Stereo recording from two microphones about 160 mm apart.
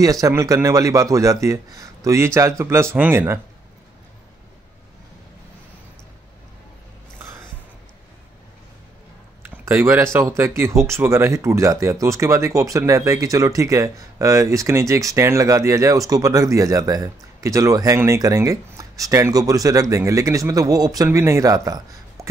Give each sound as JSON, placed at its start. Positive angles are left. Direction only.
{"t": 0.0, "sound": "speech", "side_deg": -20}
{"t": 9.7, "sound": "speech", "side_deg": -15}